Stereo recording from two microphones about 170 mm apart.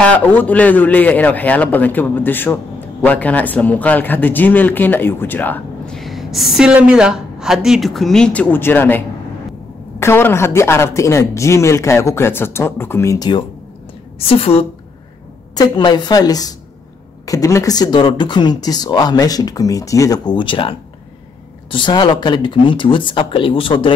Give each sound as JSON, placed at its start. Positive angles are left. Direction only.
{"t": 0.0, "sound": "a man's voice", "side_deg": 10}
{"t": 14.2, "sound": "a woman's voice", "side_deg": 35}